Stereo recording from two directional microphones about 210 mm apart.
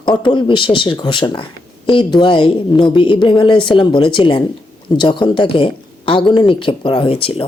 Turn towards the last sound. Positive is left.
turn(degrees=25)  # may be behind; listen again after turning